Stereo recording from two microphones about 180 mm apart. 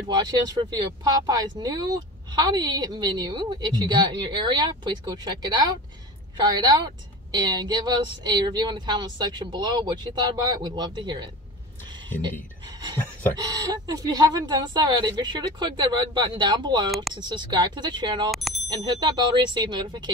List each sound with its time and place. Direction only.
0.1 s speech: 25° right (ahead or behind)
13.4 s speech: 25° right (ahead or behind)
18.3 s speech: centre (ahead or behind)
18.9 s speech: 25° right (ahead or behind)